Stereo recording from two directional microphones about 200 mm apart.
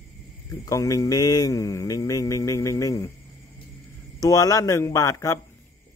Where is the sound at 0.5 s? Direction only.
15° left (ahead or behind).